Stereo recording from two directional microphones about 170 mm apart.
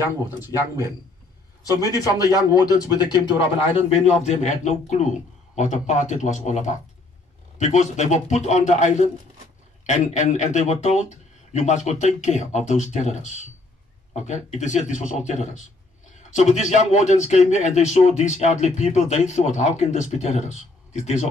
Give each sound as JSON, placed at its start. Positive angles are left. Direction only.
{"t": 1.6, "sound": "a man's voice", "side_deg": 20}
{"t": 3.9, "sound": "speech", "side_deg": 40}